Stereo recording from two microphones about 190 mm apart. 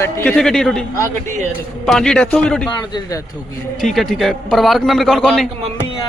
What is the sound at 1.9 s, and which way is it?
Speech, 5° left (ahead or behind).